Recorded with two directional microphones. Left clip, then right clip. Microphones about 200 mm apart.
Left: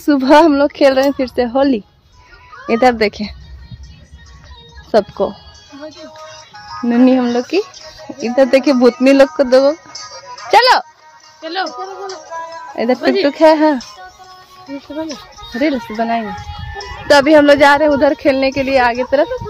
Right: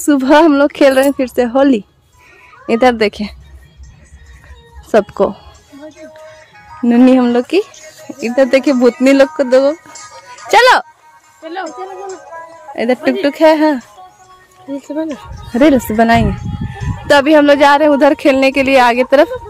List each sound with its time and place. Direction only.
0.0 s speech: 5° right (ahead or behind)
4.9 s speech: 20° right (ahead or behind)
5.8 s speech: 20° left (ahead or behind)
6.9 s speech: 15° right (ahead or behind)
7.8 s speech: centre (ahead or behind)
9.4 s music: centre (ahead or behind)
10.5 s speech: 15° right (ahead or behind)
12.7 s speech: 5° right (ahead or behind)
15.6 s speech: 45° right (ahead or behind)
17.1 s speech: 5° right (ahead or behind); by 19.2 s 25° right (ahead or behind)